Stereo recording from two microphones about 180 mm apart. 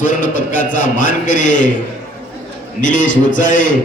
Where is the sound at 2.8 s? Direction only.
45° left (ahead or behind).